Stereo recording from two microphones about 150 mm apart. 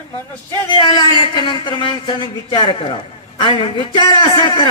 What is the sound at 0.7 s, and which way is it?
A man's voice, 30° left (ahead or behind).